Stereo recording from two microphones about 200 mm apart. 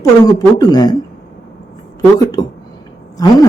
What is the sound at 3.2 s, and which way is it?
Speech, 20° left (ahead or behind).